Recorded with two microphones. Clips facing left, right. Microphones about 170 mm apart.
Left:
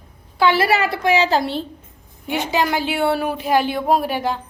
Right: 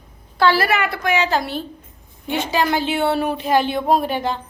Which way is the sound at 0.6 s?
30° left (ahead or behind).